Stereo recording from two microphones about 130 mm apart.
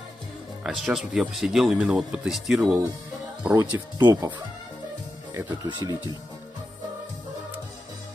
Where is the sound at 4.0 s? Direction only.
30° right (ahead or behind).